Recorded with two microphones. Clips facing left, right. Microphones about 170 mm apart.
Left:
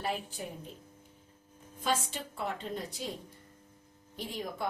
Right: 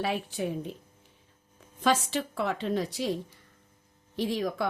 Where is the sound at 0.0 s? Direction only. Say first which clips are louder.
Right 6 dB; 75° right (ahead or behind).